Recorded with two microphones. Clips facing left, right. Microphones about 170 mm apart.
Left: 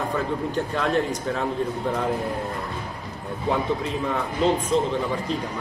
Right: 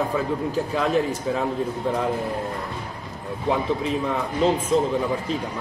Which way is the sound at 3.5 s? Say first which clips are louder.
Right 2 dB; centre (ahead or behind).